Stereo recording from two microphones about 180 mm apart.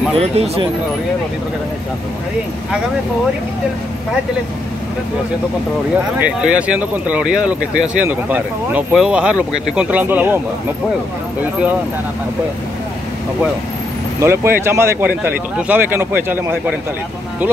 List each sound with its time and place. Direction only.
0.2 s speech: 35° right (ahead or behind)
6.1 s speech: 5° right (ahead or behind)
14.2 s speech: 15° right (ahead or behind)